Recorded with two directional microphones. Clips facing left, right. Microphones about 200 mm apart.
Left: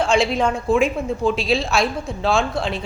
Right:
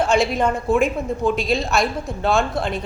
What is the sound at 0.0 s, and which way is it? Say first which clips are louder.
A woman's voice: even; 5° right (ahead or behind).